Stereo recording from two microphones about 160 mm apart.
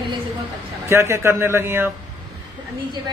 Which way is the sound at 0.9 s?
15° right (ahead or behind).